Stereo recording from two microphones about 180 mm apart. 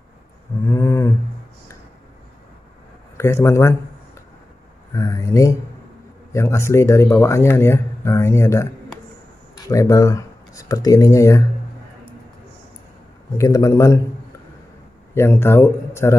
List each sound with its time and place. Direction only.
0.7 s a sound: 15° left (ahead or behind)
3.2 s speech: 15° left (ahead or behind)
4.9 s speech: 15° left (ahead or behind)
13.4 s speech: 15° left (ahead or behind)
15.1 s speech: 15° left (ahead or behind)